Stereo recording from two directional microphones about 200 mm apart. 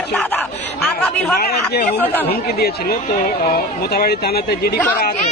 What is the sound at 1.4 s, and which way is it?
Speech, 50° left (ahead or behind).